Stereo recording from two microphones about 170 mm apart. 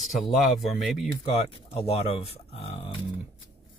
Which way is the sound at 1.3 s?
35° left (ahead or behind).